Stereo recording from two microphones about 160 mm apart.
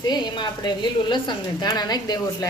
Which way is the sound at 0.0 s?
25° left (ahead or behind).